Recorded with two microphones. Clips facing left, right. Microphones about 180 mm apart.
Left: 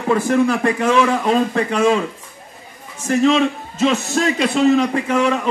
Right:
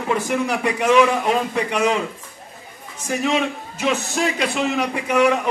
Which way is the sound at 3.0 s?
15° right (ahead or behind).